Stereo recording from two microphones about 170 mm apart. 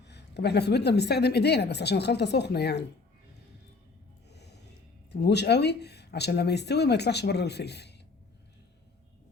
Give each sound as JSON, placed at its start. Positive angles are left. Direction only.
{"t": 0.1, "sound": "speech", "side_deg": 80}
{"t": 4.3, "sound": "snort", "side_deg": 80}
{"t": 5.1, "sound": "speech", "side_deg": 80}